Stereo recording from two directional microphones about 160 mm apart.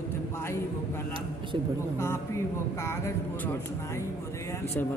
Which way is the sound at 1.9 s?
15° left (ahead or behind).